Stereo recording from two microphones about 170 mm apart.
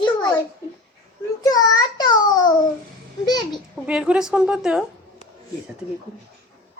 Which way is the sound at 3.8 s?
5° right (ahead or behind).